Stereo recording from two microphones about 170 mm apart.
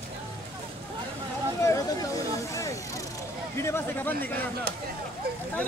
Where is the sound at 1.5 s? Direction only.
20° left (ahead or behind).